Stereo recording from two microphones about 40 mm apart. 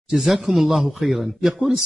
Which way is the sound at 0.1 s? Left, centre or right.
Centre.